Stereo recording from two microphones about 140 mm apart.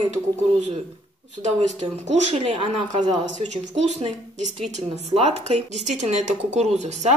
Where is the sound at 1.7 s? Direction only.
50° right (ahead or behind).